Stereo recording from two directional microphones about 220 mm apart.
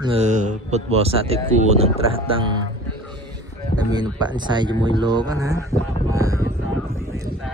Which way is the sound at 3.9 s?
20° right (ahead or behind).